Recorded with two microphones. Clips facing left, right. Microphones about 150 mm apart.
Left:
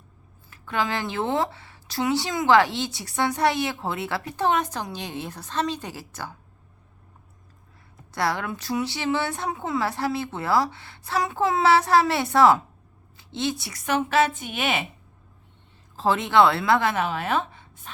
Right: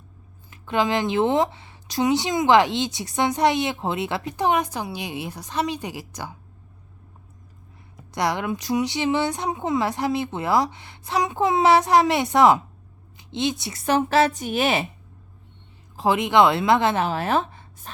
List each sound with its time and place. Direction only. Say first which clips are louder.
0.5 s speech: right 5 dB; 20° right (ahead or behind)
8.1 s speech: right 2 dB; 20° right (ahead or behind); by 14.8 s 35° right (ahead or behind)
16.0 s a woman's voice: right 1 dB; 15° right (ahead or behind); by 17.9 s 40° right (ahead or behind)